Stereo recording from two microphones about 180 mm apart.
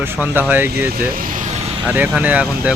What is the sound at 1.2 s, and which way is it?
Vehicle, 45° right (ahead or behind).